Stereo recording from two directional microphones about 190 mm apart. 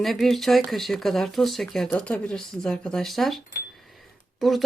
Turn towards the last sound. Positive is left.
turn(degrees=0)  # may be behind; listen again after turning